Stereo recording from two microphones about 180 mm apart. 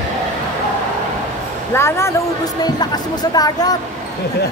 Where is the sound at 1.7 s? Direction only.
15° left (ahead or behind).